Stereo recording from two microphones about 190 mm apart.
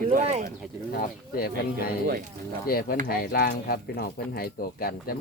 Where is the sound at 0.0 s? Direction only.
45° right (ahead or behind).